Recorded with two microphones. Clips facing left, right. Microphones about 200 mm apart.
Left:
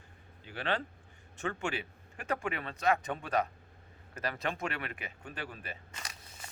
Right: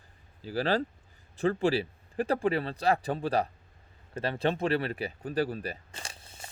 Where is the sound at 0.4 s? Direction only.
35° right (ahead or behind).